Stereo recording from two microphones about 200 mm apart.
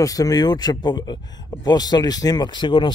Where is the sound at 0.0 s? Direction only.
15° left (ahead or behind).